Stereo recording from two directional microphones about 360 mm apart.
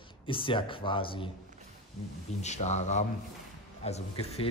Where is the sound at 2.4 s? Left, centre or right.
Centre.